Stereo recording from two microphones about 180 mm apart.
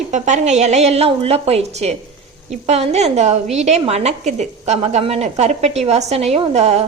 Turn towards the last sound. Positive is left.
turn(degrees=-35)  # may be behind; listen again after turning